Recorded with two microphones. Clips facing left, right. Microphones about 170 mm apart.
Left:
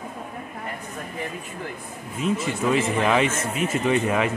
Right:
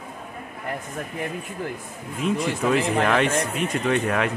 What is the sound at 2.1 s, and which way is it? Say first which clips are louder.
Speech: right 1 dB; centre (ahead or behind).